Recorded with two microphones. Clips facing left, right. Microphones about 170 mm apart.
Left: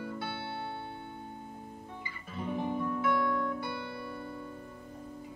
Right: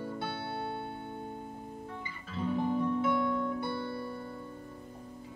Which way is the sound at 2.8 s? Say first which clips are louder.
Right 1 dB; 25° right (ahead or behind).